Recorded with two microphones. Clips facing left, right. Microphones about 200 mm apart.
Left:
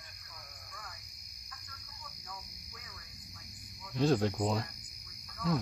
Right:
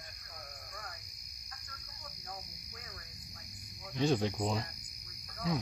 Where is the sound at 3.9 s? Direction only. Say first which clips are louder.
Left 2 dB; centre (ahead or behind).